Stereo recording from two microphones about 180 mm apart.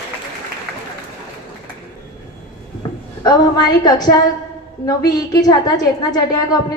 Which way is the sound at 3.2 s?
20° left (ahead or behind).